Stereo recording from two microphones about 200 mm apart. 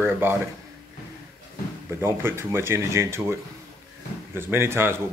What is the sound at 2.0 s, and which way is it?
Speech, 10° right (ahead or behind).